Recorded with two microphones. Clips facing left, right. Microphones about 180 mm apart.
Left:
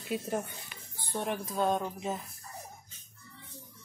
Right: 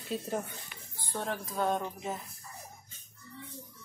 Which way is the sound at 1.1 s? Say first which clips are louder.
Left 2 dB; 15° left (ahead or behind).